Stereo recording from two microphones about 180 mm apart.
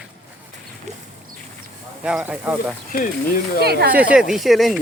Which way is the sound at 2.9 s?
55° left (ahead or behind).